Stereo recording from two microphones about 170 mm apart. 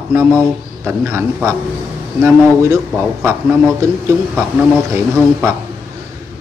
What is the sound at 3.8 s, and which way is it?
Speech, 15° right (ahead or behind).